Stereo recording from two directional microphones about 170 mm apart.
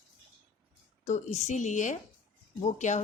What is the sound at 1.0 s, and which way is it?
Speech, 40° left (ahead or behind).